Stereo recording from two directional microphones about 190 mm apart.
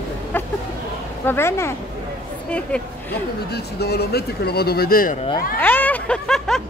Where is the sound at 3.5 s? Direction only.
55° left (ahead or behind).